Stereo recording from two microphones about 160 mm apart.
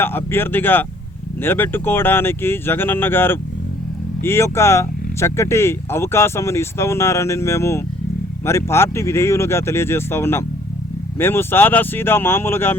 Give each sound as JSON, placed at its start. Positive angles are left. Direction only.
{"t": 0.0, "sound": "speech", "side_deg": 15}